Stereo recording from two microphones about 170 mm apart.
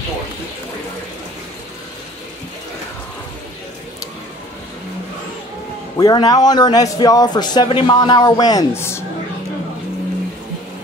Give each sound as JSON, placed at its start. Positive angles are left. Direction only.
{"t": 5.9, "sound": "a man's voice", "side_deg": 20}